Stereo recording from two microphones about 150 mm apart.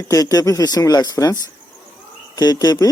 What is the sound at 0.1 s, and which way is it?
Speech, 25° left (ahead or behind).